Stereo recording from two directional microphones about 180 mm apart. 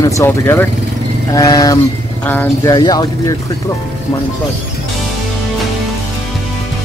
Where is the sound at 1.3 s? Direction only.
20° left (ahead or behind).